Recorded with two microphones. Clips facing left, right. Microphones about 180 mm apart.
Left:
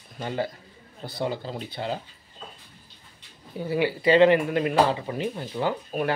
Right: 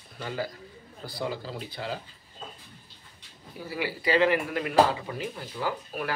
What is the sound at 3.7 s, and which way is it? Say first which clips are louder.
Speech: left 6 dB; 25° left (ahead or behind).